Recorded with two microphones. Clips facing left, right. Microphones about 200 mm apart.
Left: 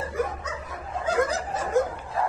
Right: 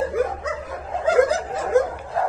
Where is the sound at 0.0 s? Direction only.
90° right.